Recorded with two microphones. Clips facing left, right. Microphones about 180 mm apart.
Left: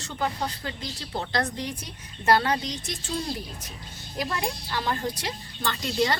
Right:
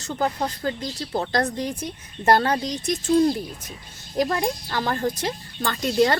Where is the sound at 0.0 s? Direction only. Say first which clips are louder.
Right 4 dB; 40° right (ahead or behind).